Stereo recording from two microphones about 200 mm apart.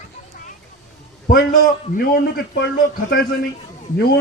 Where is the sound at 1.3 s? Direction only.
50° left (ahead or behind).